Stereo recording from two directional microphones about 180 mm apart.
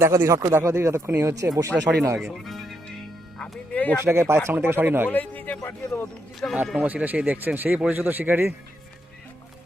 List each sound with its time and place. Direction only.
0.0 s a man's voice: 15° right (ahead or behind)
2.3 s speech: centre (ahead or behind)
3.3 s music: 5° left (ahead or behind)
4.0 s a man's voice: 15° right (ahead or behind)
5.0 s a man's voice: 10° left (ahead or behind)
6.5 s a man's voice: 5° right (ahead or behind)